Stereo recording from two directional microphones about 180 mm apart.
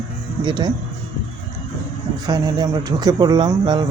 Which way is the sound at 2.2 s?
20° right (ahead or behind).